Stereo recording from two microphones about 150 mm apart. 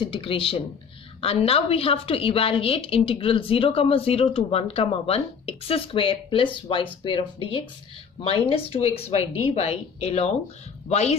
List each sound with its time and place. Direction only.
0.0 s a woman's voice: 35° left (ahead or behind)